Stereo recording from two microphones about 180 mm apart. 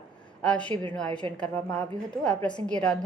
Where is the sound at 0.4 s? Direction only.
5° left (ahead or behind).